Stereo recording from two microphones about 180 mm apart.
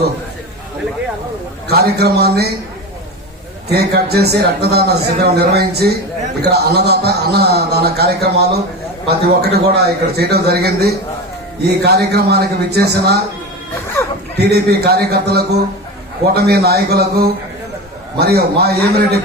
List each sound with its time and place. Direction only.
1.6 s a man's voice: 60° right (ahead or behind)
3.7 s a man's voice: 60° right (ahead or behind)
14.0 s chuckle: 15° left (ahead or behind)
14.3 s a man's voice: 65° right (ahead or behind)